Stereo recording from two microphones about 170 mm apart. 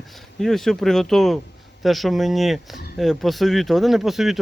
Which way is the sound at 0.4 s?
Centre (ahead or behind).